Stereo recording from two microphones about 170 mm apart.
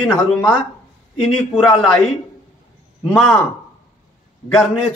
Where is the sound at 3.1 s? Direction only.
5° left (ahead or behind).